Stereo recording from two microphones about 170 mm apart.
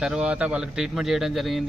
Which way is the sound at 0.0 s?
5° right (ahead or behind).